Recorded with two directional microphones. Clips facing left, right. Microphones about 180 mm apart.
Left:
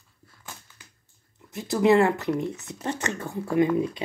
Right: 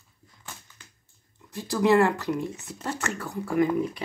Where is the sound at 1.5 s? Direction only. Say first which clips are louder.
Left 2 dB; 20° left (ahead or behind).